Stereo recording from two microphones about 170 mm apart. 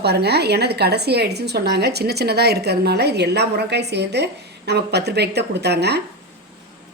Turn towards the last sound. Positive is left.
turn(degrees=-75)  # may be behind; listen again after turning